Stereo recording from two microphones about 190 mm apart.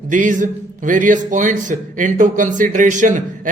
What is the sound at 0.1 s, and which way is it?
A man's voice, 40° right (ahead or behind).